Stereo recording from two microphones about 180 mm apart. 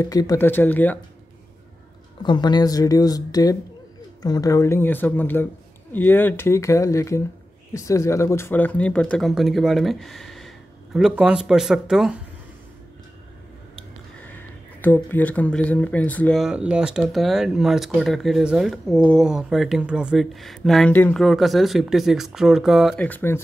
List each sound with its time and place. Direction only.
0.0 s speech: 20° left (ahead or behind)
2.2 s speech: 25° left (ahead or behind); by 12.2 s centre (ahead or behind)
14.8 s speech: 10° left (ahead or behind)